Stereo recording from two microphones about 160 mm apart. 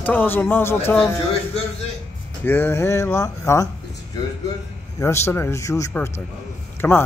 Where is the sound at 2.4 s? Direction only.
15° left (ahead or behind).